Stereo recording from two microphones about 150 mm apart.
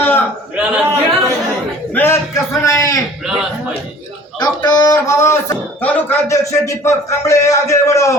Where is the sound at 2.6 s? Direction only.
20° left (ahead or behind).